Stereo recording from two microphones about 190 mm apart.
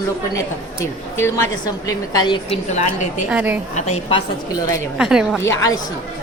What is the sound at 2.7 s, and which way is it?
Speech, 40° left (ahead or behind).